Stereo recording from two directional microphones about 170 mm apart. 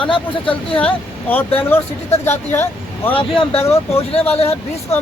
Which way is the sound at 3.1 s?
30° left (ahead or behind).